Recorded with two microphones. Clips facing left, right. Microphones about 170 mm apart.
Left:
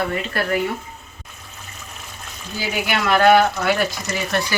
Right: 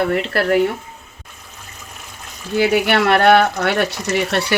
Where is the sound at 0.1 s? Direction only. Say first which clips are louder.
Right 5 dB; 70° right (ahead or behind).